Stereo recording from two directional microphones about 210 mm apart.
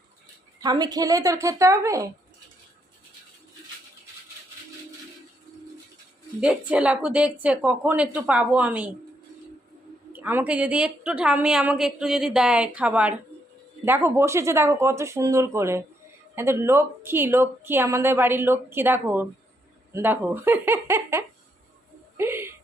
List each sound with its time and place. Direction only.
0.6 s a woman's voice: 20° right (ahead or behind)
6.4 s a woman's voice: 5° right (ahead or behind)
10.1 s a woman's voice: 10° right (ahead or behind)